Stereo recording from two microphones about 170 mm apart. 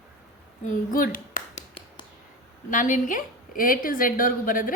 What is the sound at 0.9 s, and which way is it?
Clapping, 55° left (ahead or behind).